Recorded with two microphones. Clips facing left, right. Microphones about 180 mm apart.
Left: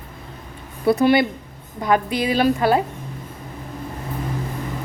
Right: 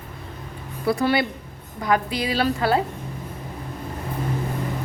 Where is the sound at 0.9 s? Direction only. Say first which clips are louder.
Left 5 dB; 20° left (ahead or behind).